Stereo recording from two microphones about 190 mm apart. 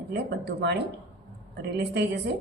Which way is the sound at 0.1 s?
65° right (ahead or behind).